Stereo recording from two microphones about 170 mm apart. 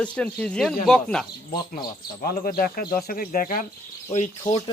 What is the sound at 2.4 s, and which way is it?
Speech, 60° left (ahead or behind).